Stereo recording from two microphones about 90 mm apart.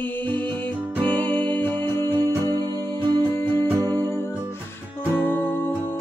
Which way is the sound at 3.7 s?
40° right (ahead or behind).